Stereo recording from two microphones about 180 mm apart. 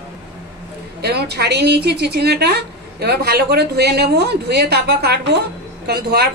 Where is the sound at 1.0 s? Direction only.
65° right (ahead or behind).